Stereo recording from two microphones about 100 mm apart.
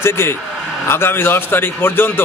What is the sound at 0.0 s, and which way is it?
A man's voice, 25° left (ahead or behind).